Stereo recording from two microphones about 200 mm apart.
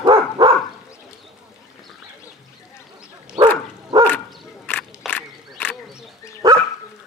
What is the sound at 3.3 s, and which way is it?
Bow-wow, 25° right (ahead or behind).